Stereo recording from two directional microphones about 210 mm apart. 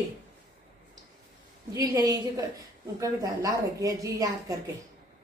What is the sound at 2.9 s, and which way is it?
A woman's voice, 15° right (ahead or behind).